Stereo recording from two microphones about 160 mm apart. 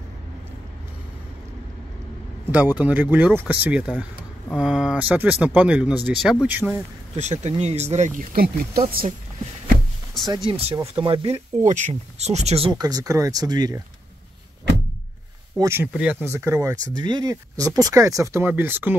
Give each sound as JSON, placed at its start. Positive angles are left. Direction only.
{"t": 2.5, "sound": "speech", "side_deg": -10}
{"t": 7.2, "sound": "speech", "side_deg": -45}
{"t": 8.4, "sound": "speech", "side_deg": -70}
{"t": 10.3, "sound": "speech", "side_deg": -35}
{"t": 12.8, "sound": "speech", "side_deg": -20}
{"t": 15.6, "sound": "speech", "side_deg": -15}